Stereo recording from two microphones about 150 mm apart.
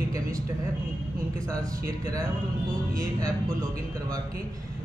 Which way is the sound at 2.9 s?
20° right (ahead or behind).